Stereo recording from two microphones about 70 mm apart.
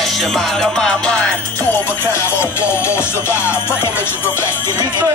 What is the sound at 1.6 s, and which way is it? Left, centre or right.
Music, left.